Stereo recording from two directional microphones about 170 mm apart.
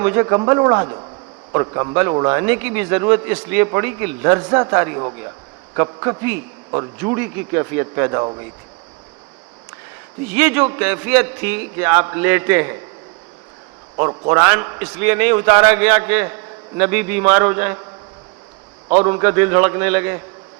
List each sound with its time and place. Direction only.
0.0 s a man's voice: 20° right (ahead or behind)
2.5 s a man's voice: 10° right (ahead or behind)
10.3 s a man's voice: 10° right (ahead or behind)
13.9 s a man's voice: 25° right (ahead or behind)
19.0 s a man's voice: 20° right (ahead or behind)